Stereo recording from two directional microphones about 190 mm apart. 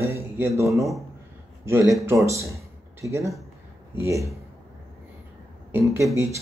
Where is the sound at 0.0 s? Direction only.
15° right (ahead or behind).